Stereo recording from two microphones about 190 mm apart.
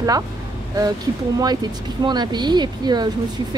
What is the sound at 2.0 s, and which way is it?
Speech, 20° right (ahead or behind).